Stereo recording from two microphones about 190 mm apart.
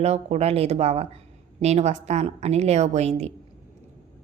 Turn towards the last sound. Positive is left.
turn(degrees=-35)  # may be behind; listen again after turning